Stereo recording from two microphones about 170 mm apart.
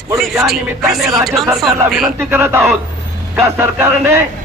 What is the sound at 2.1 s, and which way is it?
A man's voice, 15° right (ahead or behind).